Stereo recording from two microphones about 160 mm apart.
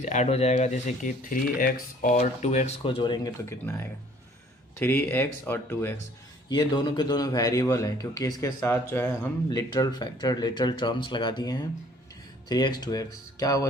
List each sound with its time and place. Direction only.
0.0 s speech: 50° left (ahead or behind)
3.0 s speech: 25° left (ahead or behind)
6.5 s speech: 30° left (ahead or behind)
9.5 s speech: 25° left (ahead or behind)